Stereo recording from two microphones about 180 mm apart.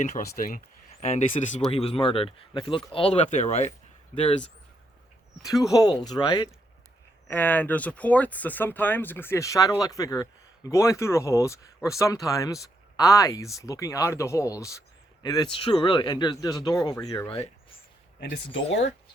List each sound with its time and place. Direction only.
0.3 s speech: 50° left (ahead or behind); by 4.4 s 30° left (ahead or behind)
5.4 s speech: 20° left (ahead or behind)
7.3 s speech: 10° left (ahead or behind)
18.2 s speech: 75° left (ahead or behind)